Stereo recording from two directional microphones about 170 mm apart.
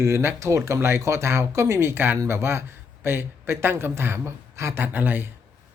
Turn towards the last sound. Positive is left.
turn(degrees=-10)  # may be behind; listen again after turning